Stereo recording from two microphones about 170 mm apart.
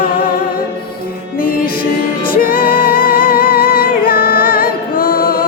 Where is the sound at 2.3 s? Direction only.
60° left (ahead or behind).